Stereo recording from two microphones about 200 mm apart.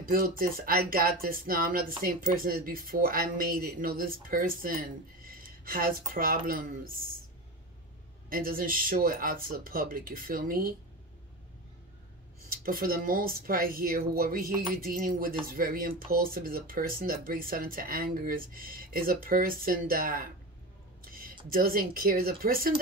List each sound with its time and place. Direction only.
0.0 s speech: 45° right (ahead or behind)
8.3 s speech: 45° right (ahead or behind)
12.4 s speech: 45° right (ahead or behind)
21.0 s a sound: 45° right (ahead or behind)
21.5 s speech: 45° right (ahead or behind)